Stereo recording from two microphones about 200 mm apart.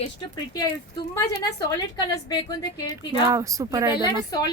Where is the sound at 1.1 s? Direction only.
20° left (ahead or behind).